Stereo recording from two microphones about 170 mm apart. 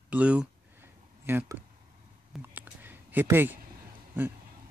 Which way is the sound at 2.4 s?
10° right (ahead or behind).